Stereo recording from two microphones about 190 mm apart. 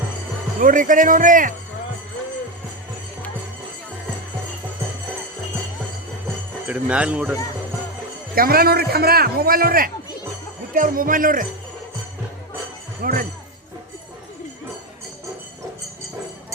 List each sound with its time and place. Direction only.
0.6 s a man's voice: 45° right (ahead or behind)
6.7 s speech: 5° right (ahead or behind)
8.4 s a man's voice: 50° right (ahead or behind)
13.0 s speech: 50° right (ahead or behind)